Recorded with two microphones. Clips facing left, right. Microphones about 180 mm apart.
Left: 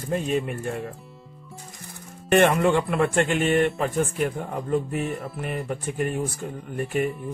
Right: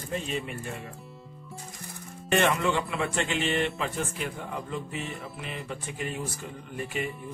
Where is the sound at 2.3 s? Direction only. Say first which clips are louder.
Left 6 dB; 55° left (ahead or behind).